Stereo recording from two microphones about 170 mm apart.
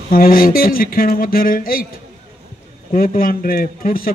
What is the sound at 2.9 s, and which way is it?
Speech, 55° left (ahead or behind).